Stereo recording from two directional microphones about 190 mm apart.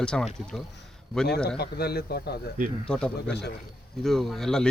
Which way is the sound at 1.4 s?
60° left (ahead or behind).